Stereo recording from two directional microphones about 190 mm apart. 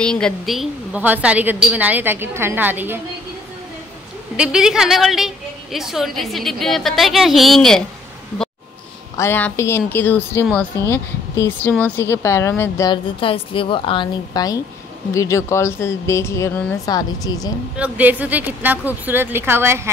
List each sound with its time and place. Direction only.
0.0 s a woman's voice: 5° left (ahead or behind)
4.4 s a woman's voice: 5° right (ahead or behind)
9.1 s a woman's voice: 15° left (ahead or behind)
17.7 s a woman's voice: 10° right (ahead or behind)